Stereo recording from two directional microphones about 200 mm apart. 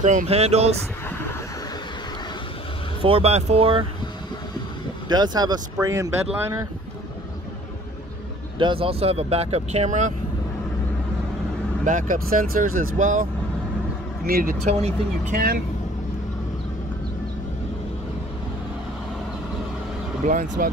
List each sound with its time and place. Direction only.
0.0 s speech: 35° right (ahead or behind)
3.0 s speech: 30° right (ahead or behind)
5.0 s speech: 20° right (ahead or behind)
8.5 s speech: 25° right (ahead or behind)
11.8 s speech: 40° right (ahead or behind)
20.2 s speech: 40° right (ahead or behind)